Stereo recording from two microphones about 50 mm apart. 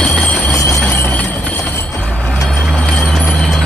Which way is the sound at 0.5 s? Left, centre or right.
Left.